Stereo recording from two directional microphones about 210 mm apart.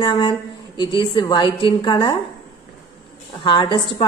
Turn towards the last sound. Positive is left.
turn(degrees=20)  # may be behind; listen again after turning